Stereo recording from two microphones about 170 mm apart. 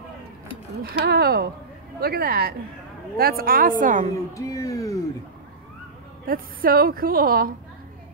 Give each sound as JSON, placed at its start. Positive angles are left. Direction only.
{"t": 0.8, "sound": "a woman's voice", "side_deg": -70}
{"t": 4.3, "sound": "speech", "side_deg": 20}
{"t": 6.2, "sound": "a woman's voice", "side_deg": -60}